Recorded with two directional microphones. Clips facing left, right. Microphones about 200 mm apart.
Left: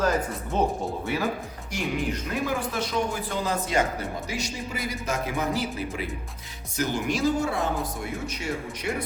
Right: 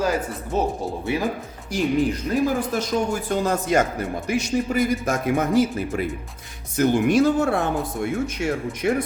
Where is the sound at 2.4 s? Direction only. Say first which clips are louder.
Right 5 dB; 40° right (ahead or behind).